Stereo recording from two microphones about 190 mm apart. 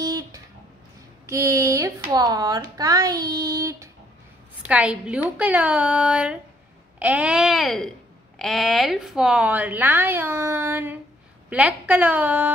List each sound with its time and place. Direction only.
0.0 s a sound: 20° right (ahead or behind)
1.2 s speech: 15° right (ahead or behind)
4.6 s a woman's voice: 5° right (ahead or behind)